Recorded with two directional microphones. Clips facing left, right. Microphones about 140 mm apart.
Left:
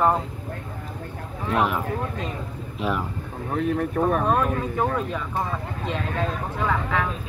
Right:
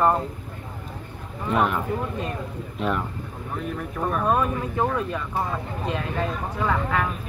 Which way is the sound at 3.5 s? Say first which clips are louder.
Left 8 dB; 45° left (ahead or behind).